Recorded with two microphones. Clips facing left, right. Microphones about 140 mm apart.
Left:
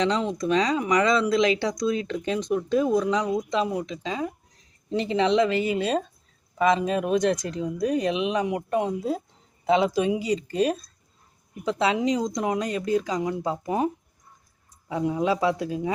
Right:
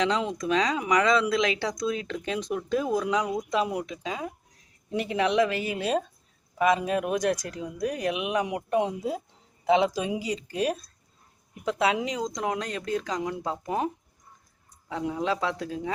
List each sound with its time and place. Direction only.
0.0 s speech: 5° right (ahead or behind)